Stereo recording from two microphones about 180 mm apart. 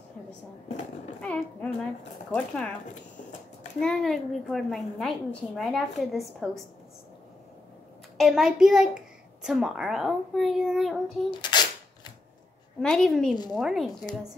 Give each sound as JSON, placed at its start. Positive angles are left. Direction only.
{"t": 1.2, "sound": "a woman's voice", "side_deg": 5}
{"t": 3.8, "sound": "a woman's voice", "side_deg": 0}
{"t": 8.2, "sound": "a woman's voice", "side_deg": 0}
{"t": 11.2, "sound": "a sound", "side_deg": 25}
{"t": 12.8, "sound": "a woman's voice", "side_deg": 0}